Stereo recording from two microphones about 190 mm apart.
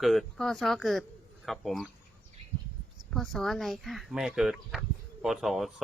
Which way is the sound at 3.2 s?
Centre (ahead or behind).